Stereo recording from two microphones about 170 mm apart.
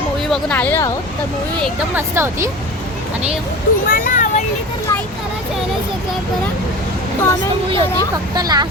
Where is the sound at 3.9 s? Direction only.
50° left (ahead or behind).